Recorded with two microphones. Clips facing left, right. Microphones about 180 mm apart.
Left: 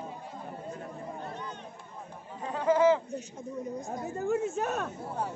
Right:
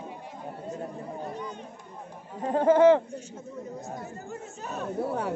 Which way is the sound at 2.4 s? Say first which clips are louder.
Right 5 dB; 50° right (ahead or behind).